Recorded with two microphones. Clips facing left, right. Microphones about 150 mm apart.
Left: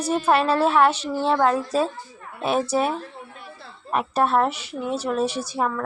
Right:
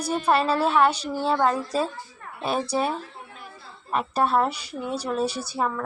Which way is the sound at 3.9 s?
Centre (ahead or behind).